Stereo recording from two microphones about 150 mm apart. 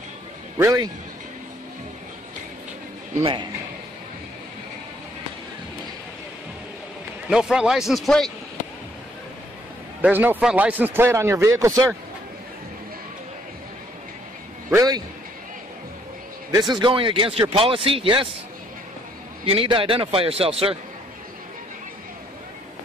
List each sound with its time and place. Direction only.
0.6 s a man's voice: 20° right (ahead or behind)
7.2 s a man's voice: centre (ahead or behind)
10.0 s speech: 10° right (ahead or behind)
14.7 s a man's voice: 25° right (ahead or behind)
16.5 s speech: 30° right (ahead or behind)
19.5 s speech: 35° right (ahead or behind)